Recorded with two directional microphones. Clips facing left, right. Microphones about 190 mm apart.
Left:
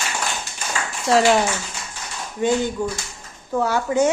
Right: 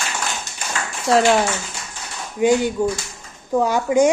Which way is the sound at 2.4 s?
10° right (ahead or behind).